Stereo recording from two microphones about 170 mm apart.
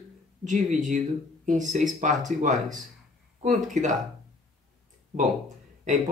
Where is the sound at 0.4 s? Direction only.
45° right (ahead or behind).